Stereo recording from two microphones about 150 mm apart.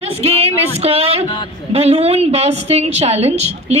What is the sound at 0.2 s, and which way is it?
A woman's voice, 40° right (ahead or behind).